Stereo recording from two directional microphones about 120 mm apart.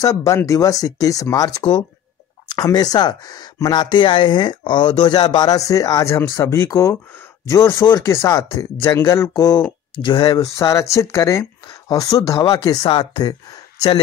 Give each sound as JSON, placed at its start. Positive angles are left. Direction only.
{"t": 0.0, "sound": "speech", "side_deg": 30}
{"t": 1.6, "sound": "speech", "side_deg": 45}
{"t": 2.5, "sound": "speech", "side_deg": 35}
{"t": 12.5, "sound": "speech", "side_deg": 40}